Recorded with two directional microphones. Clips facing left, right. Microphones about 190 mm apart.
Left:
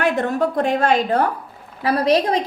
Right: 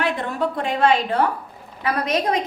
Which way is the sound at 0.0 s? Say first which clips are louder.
Left 4 dB; 45° left (ahead or behind).